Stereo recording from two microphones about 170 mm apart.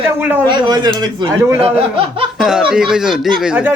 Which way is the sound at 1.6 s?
35° right (ahead or behind).